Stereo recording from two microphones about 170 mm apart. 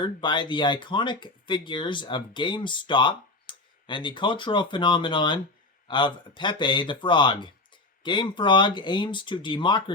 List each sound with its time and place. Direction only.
0.0 s speech: 25° left (ahead or behind)